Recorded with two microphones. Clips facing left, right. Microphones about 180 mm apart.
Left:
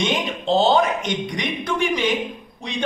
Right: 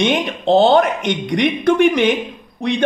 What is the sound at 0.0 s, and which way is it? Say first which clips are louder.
A man's voice: right 6 dB; 60° right (ahead or behind).